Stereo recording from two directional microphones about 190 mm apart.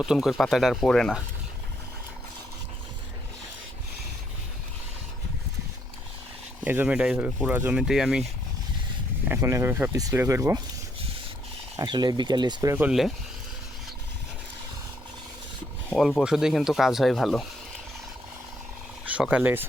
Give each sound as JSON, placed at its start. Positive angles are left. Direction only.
{"t": 0.0, "sound": "speech", "side_deg": -5}
{"t": 6.7, "sound": "speech", "side_deg": -10}
{"t": 9.3, "sound": "speech", "side_deg": -15}
{"t": 11.8, "sound": "speech", "side_deg": -20}
{"t": 12.7, "sound": "speech", "side_deg": -5}
{"t": 16.0, "sound": "speech", "side_deg": 0}
{"t": 19.0, "sound": "speech", "side_deg": -5}